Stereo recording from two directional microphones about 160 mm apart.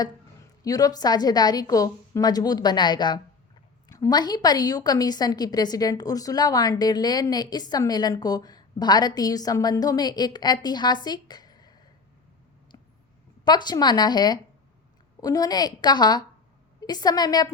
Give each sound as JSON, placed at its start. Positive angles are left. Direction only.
{"t": 0.6, "sound": "a woman's voice", "side_deg": 20}
{"t": 13.4, "sound": "a woman's voice", "side_deg": 25}